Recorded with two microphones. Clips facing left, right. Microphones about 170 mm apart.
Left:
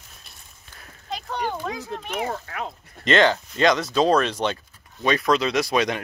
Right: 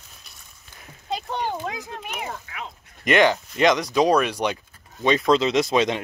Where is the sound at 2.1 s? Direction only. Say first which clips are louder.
Left 7 dB; 45° left (ahead or behind).